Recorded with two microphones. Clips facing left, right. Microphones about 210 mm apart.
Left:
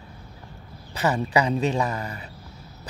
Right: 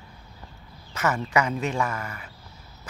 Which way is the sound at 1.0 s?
35° left (ahead or behind).